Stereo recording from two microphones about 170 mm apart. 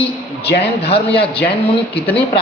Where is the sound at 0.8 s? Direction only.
35° left (ahead or behind).